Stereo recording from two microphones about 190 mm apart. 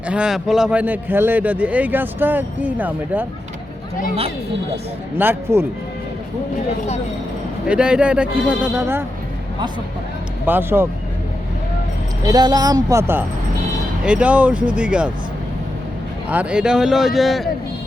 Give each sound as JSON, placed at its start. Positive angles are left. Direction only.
{"t": 0.1, "sound": "a man's voice", "side_deg": -5}
{"t": 5.1, "sound": "a man's voice", "side_deg": -10}
{"t": 7.7, "sound": "speech", "side_deg": -5}
{"t": 10.4, "sound": "a man's voice", "side_deg": -10}
{"t": 12.2, "sound": "a man's voice", "side_deg": -20}
{"t": 16.3, "sound": "speech", "side_deg": -5}